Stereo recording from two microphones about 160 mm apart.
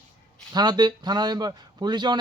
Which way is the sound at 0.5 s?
25° right (ahead or behind).